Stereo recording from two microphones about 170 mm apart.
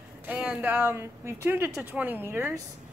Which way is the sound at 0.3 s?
5° right (ahead or behind).